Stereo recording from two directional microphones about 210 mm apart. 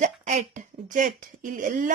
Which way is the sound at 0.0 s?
35° right (ahead or behind).